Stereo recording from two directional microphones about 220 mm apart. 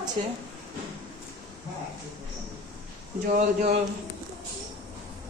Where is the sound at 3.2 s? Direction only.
40° right (ahead or behind).